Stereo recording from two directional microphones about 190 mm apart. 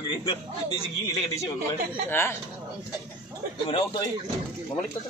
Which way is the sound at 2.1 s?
10° left (ahead or behind).